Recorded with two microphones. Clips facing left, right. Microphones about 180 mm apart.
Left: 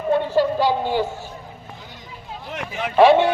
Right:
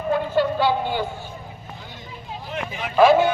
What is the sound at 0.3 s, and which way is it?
Speech, 40° left (ahead or behind).